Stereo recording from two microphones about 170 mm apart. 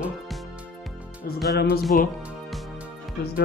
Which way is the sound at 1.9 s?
55° left (ahead or behind).